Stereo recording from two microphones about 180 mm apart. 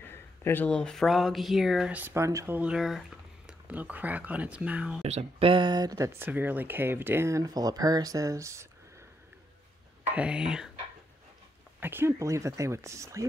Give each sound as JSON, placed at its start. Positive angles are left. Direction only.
{"t": 0.0, "sound": "speech", "side_deg": 10}
{"t": 5.0, "sound": "speech", "side_deg": -35}
{"t": 10.0, "sound": "speech", "side_deg": -5}
{"t": 11.8, "sound": "speech", "side_deg": -10}